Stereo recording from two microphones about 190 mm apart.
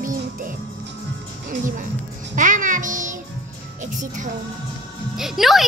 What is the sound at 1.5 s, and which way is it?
Speech, 45° right (ahead or behind).